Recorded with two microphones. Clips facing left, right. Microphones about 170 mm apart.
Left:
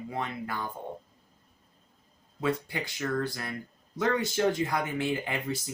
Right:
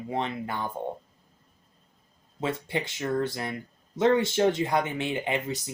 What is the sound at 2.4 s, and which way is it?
Speech, 25° right (ahead or behind).